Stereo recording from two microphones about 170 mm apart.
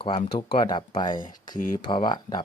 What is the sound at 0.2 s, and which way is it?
Speech, 30° left (ahead or behind).